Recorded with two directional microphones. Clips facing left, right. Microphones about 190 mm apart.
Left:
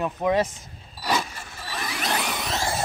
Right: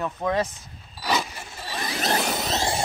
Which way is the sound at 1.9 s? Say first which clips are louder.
Right 3 dB; 40° right (ahead or behind).